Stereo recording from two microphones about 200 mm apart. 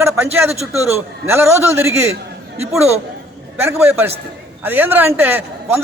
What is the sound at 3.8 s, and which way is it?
A man's voice, 10° right (ahead or behind).